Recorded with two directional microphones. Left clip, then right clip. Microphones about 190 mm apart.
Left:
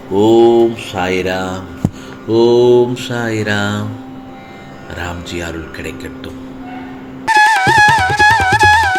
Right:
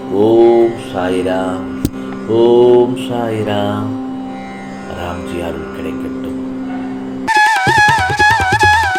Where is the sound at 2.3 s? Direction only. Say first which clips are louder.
Right 1 dB; 45° left (ahead or behind).